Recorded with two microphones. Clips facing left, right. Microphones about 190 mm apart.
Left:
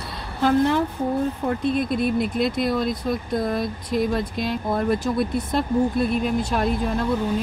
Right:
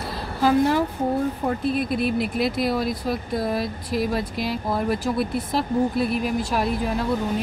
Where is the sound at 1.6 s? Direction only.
5° right (ahead or behind).